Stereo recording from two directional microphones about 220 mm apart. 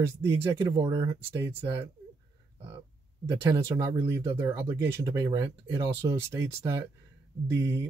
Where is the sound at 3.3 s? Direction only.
25° right (ahead or behind).